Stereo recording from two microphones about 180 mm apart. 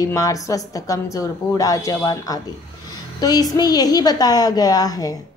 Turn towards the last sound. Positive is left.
turn(degrees=20)  # may be behind; listen again after turning